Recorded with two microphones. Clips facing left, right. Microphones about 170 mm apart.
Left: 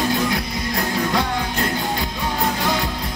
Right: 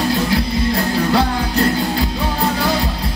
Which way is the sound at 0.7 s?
35° right (ahead or behind).